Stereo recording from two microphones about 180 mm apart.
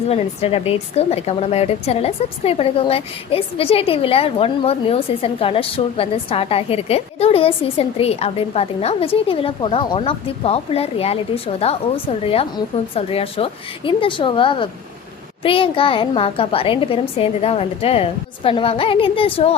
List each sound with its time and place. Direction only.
0.1 s a woman's voice: 35° left (ahead or behind)